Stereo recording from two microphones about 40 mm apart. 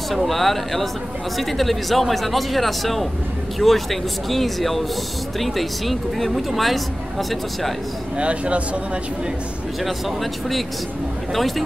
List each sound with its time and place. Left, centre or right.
0.1 s speech: centre
8.2 s speech: right
11.3 s speech: centre